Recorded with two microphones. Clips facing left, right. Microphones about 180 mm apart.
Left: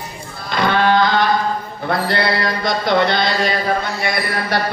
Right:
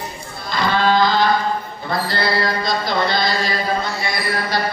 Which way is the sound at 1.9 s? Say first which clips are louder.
Left 3 dB; 65° left (ahead or behind).